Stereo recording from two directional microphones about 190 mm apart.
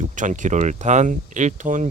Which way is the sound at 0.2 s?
40° right (ahead or behind).